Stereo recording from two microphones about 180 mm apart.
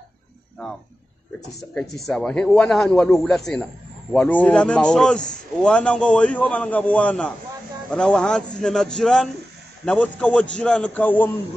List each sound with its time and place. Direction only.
1.7 s a man's voice: centre (ahead or behind)